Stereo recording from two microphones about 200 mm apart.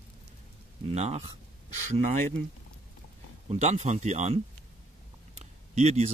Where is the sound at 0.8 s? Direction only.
30° right (ahead or behind).